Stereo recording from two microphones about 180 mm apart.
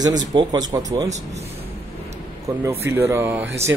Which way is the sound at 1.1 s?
35° right (ahead or behind).